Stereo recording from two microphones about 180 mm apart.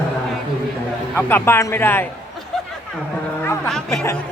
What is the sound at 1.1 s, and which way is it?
Speech, 10° left (ahead or behind).